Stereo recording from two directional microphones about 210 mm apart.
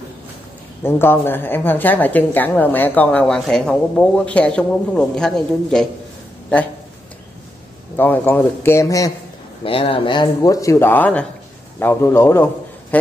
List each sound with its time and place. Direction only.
0.8 s a woman's voice: 10° left (ahead or behind)
7.9 s a woman's voice: 10° left (ahead or behind)
9.7 s a woman's voice: 25° left (ahead or behind); by 13.1 s 5° left (ahead or behind)